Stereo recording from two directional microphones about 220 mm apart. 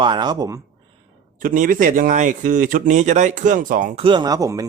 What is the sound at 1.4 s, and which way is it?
A man's voice, 40° right (ahead or behind).